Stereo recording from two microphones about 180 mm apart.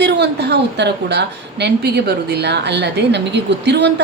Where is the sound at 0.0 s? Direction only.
70° right (ahead or behind).